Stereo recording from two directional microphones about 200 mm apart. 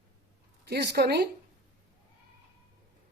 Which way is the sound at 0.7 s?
55° right (ahead or behind).